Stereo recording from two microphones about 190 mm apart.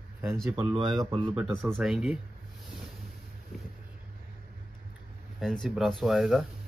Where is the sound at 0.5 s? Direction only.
10° right (ahead or behind).